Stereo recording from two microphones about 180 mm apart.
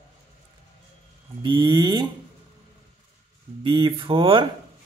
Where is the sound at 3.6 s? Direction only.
30° right (ahead or behind).